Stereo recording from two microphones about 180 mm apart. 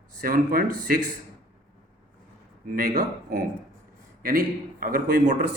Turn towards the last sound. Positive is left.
turn(degrees=-45)  # may be behind; listen again after turning